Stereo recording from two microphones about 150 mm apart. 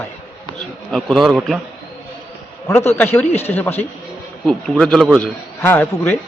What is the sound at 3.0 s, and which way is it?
Speech, 15° left (ahead or behind).